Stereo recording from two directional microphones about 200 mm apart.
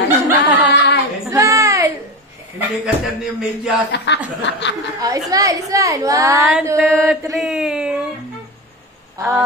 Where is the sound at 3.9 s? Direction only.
55° left (ahead or behind).